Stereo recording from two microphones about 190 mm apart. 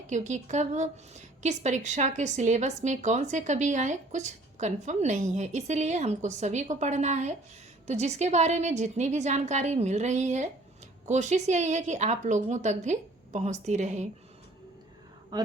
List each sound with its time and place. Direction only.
0.1 s a woman's voice: 40° right (ahead or behind)
15.3 s speech: 20° right (ahead or behind)